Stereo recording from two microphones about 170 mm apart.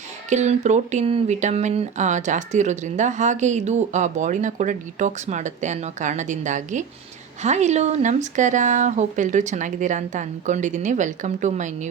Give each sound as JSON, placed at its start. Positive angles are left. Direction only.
{"t": 0.3, "sound": "speech", "side_deg": -45}